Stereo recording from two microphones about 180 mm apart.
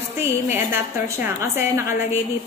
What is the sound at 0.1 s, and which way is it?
A woman's voice, 10° right (ahead or behind).